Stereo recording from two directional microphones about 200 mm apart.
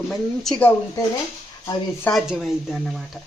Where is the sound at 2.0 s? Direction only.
Centre (ahead or behind).